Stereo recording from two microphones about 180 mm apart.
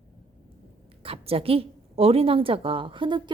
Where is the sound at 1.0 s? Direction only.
30° right (ahead or behind).